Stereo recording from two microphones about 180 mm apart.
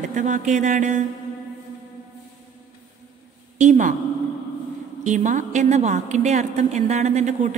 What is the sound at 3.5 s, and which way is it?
Speech, 40° right (ahead or behind).